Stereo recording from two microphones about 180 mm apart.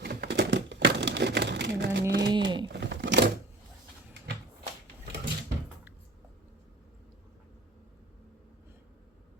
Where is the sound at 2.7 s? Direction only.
75° right (ahead or behind).